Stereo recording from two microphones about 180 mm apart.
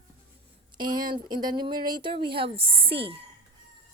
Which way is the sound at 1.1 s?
25° right (ahead or behind).